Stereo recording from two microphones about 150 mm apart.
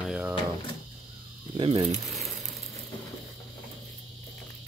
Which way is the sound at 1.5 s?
35° right (ahead or behind).